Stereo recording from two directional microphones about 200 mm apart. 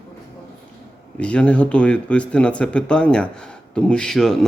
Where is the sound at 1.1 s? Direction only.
5° left (ahead or behind).